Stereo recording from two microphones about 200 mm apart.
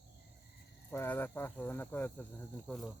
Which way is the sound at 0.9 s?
10° left (ahead or behind).